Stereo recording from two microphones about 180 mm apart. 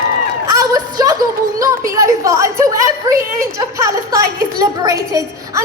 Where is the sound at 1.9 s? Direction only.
20° right (ahead or behind).